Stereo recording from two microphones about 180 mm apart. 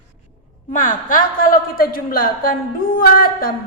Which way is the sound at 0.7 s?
45° left (ahead or behind).